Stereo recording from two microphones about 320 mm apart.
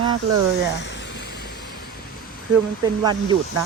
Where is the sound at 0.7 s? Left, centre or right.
Left.